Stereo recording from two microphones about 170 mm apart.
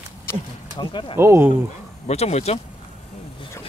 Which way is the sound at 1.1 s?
15° right (ahead or behind).